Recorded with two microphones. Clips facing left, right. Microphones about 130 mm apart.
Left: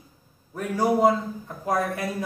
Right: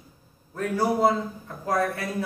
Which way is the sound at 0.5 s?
15° left (ahead or behind).